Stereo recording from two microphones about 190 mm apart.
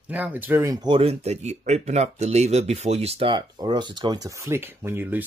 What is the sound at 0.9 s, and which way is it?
Speech, 30° right (ahead or behind).